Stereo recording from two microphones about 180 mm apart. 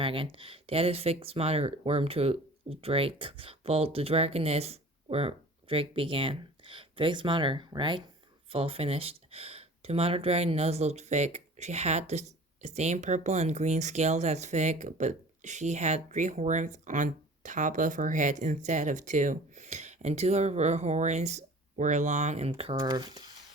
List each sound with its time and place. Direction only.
0.0 s speech: 30° right (ahead or behind)